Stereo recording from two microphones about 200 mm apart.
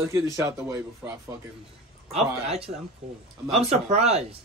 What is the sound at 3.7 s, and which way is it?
Speech, 30° right (ahead or behind).